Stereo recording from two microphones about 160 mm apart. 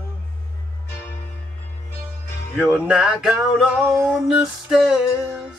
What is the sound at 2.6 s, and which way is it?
Music, 5° right (ahead or behind).